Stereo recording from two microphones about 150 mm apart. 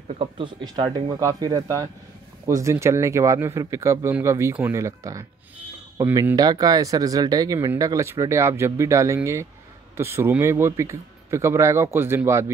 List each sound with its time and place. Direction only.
0.1 s speech: 35° right (ahead or behind); by 12.4 s 15° right (ahead or behind)